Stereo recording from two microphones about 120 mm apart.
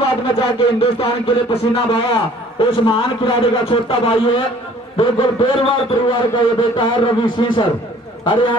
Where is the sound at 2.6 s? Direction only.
45° left (ahead or behind).